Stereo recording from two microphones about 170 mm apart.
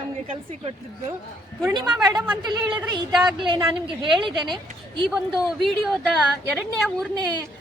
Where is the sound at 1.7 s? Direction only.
25° right (ahead or behind).